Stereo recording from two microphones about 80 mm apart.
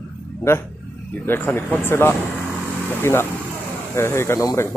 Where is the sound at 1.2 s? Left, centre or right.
Left.